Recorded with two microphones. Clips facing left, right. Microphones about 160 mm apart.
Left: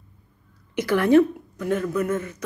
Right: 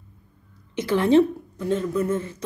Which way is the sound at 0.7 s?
25° right (ahead or behind).